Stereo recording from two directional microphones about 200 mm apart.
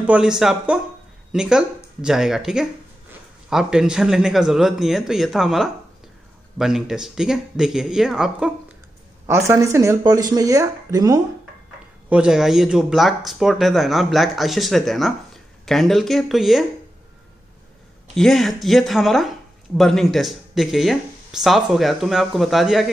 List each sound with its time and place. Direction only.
0.0 s speech: 5° right (ahead or behind)
9.2 s speech: 15° right (ahead or behind)
12.1 s speech: 5° right (ahead or behind)
18.1 s speech: centre (ahead or behind)